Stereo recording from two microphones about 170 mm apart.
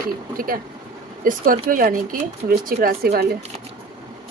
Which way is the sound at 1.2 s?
55° right (ahead or behind).